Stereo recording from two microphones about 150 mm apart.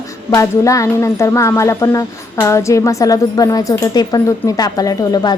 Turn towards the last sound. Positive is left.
turn(degrees=25)  # may be behind; listen again after turning